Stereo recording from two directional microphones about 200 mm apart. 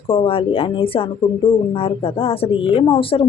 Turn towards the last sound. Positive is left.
turn(degrees=25)  # may be behind; listen again after turning